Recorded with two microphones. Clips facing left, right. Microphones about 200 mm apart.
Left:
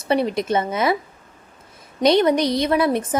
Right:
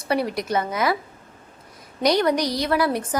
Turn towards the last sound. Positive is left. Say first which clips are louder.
# left 3 dB
turn(degrees=20)  # may be behind; listen again after turning